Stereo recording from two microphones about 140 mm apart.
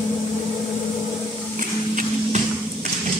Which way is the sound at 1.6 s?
70° right (ahead or behind).